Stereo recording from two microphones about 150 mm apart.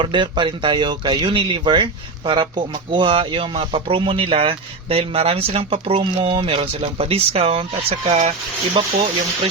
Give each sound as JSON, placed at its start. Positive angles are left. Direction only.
{"t": 0.0, "sound": "speech", "side_deg": -30}